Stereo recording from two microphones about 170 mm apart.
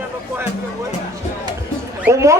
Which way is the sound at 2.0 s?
15° right (ahead or behind).